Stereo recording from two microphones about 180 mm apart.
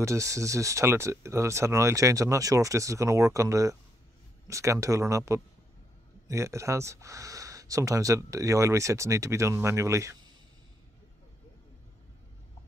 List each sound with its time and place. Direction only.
0.0 s speech: 15° right (ahead or behind)